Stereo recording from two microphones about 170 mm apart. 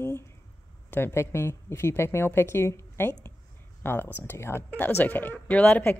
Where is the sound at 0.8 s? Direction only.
10° left (ahead or behind).